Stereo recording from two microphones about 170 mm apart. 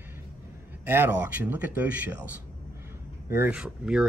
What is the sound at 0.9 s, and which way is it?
Speech, 10° right (ahead or behind).